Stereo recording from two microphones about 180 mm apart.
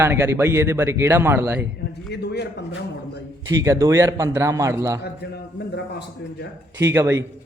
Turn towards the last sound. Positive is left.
turn(degrees=-15)  # may be behind; listen again after turning